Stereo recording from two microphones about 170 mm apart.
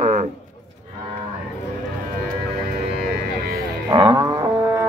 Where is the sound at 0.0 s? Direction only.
45° right (ahead or behind).